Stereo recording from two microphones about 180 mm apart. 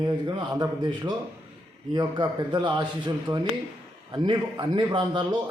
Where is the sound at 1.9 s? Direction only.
25° right (ahead or behind).